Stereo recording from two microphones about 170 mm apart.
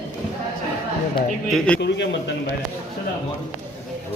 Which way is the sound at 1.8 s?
90° left.